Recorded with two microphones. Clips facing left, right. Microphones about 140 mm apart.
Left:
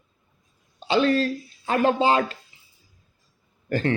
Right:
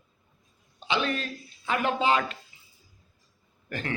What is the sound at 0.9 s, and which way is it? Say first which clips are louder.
Speech: left 8 dB; 35° left (ahead or behind).